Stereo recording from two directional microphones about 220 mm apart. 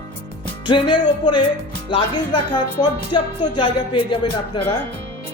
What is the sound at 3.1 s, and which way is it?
Speech, 20° left (ahead or behind).